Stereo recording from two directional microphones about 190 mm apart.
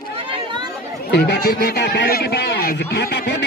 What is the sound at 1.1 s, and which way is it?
Speech, 60° left (ahead or behind).